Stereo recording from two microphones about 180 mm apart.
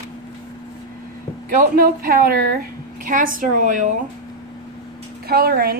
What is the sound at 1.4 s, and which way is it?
A woman's voice, 55° right (ahead or behind).